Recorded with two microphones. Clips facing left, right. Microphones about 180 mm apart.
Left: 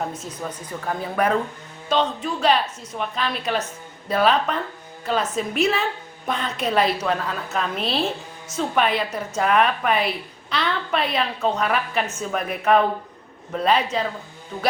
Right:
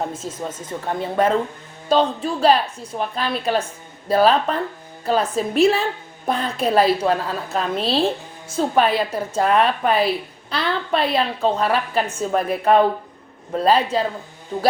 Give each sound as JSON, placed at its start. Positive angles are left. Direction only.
{"t": 0.1, "sound": "a woman's voice", "side_deg": -25}